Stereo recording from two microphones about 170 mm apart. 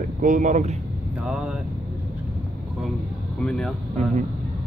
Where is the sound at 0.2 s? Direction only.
50° right (ahead or behind).